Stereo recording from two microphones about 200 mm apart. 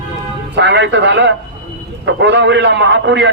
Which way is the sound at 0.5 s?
60° right (ahead or behind).